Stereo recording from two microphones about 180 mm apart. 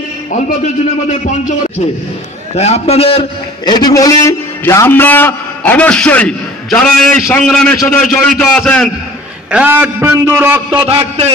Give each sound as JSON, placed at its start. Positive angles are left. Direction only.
{"t": 2.5, "sound": "a man's voice", "side_deg": 35}
{"t": 9.5, "sound": "a man's voice", "side_deg": -10}
{"t": 10.9, "sound": "a man's voice", "side_deg": -35}